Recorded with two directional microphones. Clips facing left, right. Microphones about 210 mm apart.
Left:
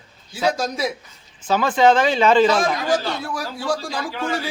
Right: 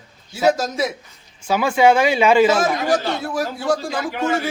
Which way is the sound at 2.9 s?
25° right (ahead or behind).